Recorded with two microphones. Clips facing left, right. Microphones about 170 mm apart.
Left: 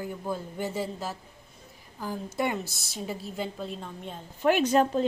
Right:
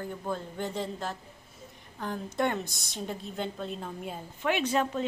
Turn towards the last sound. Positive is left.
turn(degrees=35)  # may be behind; listen again after turning